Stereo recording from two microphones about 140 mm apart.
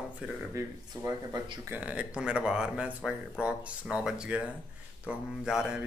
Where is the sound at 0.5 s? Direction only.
20° right (ahead or behind).